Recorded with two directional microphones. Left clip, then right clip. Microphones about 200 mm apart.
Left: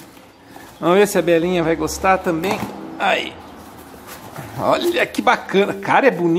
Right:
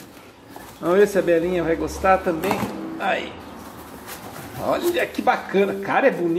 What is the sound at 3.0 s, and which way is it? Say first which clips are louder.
Speech: left 6 dB; 30° left (ahead or behind).